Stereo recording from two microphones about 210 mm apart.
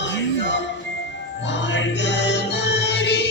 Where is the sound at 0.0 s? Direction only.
55° left (ahead or behind).